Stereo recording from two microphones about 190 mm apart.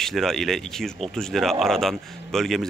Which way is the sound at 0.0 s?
Centre (ahead or behind).